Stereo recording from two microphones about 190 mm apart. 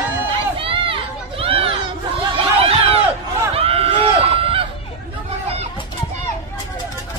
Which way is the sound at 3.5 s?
30° right (ahead or behind).